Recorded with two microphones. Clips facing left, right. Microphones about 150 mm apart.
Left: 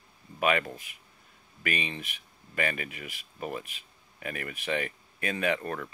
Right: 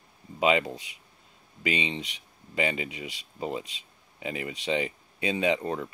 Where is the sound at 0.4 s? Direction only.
20° right (ahead or behind).